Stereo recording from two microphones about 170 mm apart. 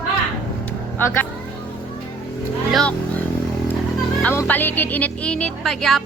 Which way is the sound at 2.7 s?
5° left (ahead or behind).